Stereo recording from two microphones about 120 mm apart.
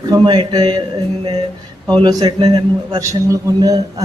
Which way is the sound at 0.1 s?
35° right (ahead or behind).